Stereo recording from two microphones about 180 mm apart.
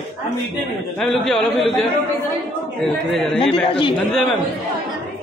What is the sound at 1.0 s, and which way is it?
Speech, 5° left (ahead or behind).